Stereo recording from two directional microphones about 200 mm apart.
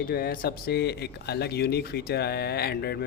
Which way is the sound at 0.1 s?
50° left (ahead or behind).